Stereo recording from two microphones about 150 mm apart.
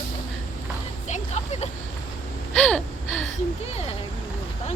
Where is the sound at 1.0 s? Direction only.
50° left (ahead or behind).